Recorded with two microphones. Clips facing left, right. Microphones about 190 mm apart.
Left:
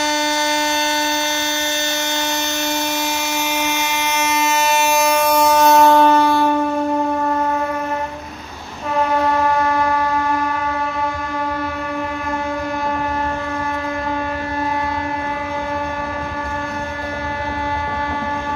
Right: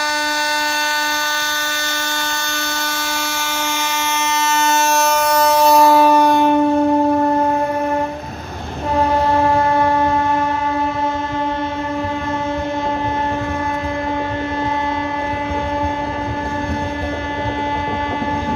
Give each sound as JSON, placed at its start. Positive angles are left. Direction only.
{"t": 4.1, "sound": "vehicle", "side_deg": 15}
{"t": 5.3, "sound": "train", "side_deg": 0}
{"t": 9.3, "sound": "a sound", "side_deg": -25}